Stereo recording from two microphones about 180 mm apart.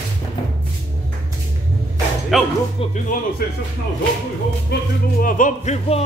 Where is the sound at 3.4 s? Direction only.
60° left (ahead or behind).